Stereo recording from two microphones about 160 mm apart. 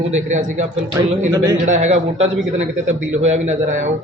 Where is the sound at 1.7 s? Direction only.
50° right (ahead or behind).